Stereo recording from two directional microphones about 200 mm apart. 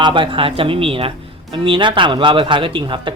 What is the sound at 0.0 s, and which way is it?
A man's voice, 25° right (ahead or behind).